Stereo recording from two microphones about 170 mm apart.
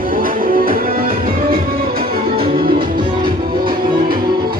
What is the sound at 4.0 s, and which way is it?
Music, 60° right (ahead or behind).